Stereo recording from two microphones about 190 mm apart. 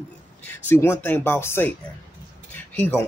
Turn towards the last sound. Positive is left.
turn(degrees=10)  # may be behind; listen again after turning